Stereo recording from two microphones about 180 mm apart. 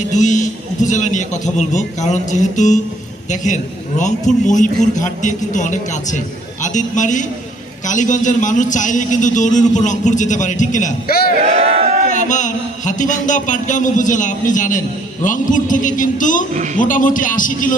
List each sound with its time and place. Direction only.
0.1 s a man's voice: 40° left (ahead or behind)
11.4 s a sound: 35° right (ahead or behind)
12.1 s a man's voice: 45° left (ahead or behind)